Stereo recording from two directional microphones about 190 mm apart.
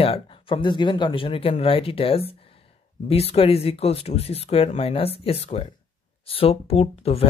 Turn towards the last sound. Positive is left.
turn(degrees=30)  # may be behind; listen again after turning